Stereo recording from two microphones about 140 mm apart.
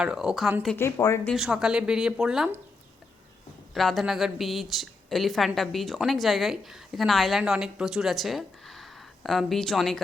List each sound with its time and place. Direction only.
0.0 s a woman's voice: 5° right (ahead or behind)
0.8 s speech: 20° left (ahead or behind)
1.3 s a woman's voice: 5° right (ahead or behind)
3.8 s a woman's voice: centre (ahead or behind)